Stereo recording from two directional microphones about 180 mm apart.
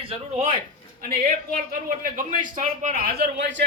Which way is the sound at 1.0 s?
55° right (ahead or behind).